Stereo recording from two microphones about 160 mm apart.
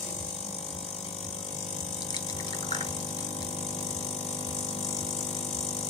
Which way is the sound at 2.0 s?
25° left (ahead or behind).